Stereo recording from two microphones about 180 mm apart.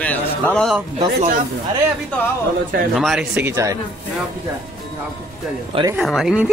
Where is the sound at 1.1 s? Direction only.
45° right (ahead or behind).